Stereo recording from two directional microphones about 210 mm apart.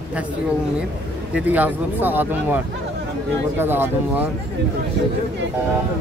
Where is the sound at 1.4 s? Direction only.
10° right (ahead or behind).